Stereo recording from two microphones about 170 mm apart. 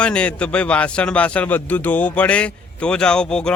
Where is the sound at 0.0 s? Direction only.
5° left (ahead or behind).